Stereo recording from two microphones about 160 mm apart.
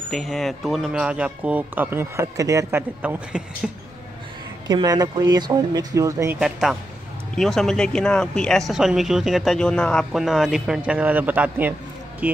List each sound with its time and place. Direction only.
0.1 s speech: centre (ahead or behind); by 2.8 s 20° right (ahead or behind)
3.0 s speech: 5° right (ahead or behind)
4.6 s speech: 25° right (ahead or behind)
6.4 s speech: centre (ahead or behind)